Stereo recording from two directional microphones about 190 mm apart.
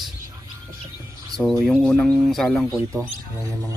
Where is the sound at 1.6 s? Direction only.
5° left (ahead or behind).